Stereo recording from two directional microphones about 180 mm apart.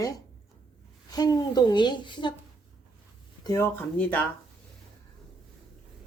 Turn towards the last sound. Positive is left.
turn(degrees=10)  # may be behind; listen again after turning